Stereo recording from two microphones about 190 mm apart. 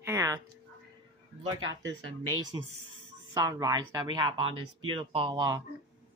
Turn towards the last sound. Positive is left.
turn(degrees=-20)  # may be behind; listen again after turning